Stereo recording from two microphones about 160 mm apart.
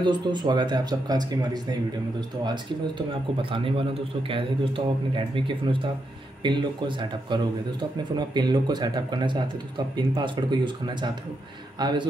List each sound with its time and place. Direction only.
0.0 s a man's voice: 30° right (ahead or behind)